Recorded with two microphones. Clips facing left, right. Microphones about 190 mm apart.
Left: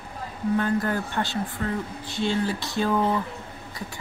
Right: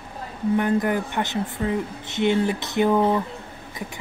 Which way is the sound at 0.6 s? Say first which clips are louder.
Right 4 dB; 20° right (ahead or behind).